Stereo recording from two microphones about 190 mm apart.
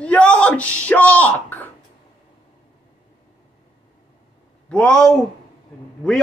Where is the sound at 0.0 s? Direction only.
5° left (ahead or behind).